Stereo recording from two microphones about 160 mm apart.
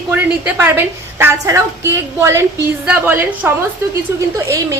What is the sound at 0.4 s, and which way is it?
A woman's voice, 15° right (ahead or behind).